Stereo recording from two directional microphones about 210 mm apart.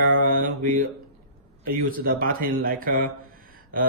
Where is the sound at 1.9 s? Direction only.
45° right (ahead or behind).